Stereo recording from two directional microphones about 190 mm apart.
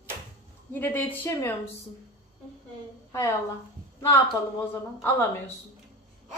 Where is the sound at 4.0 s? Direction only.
15° left (ahead or behind).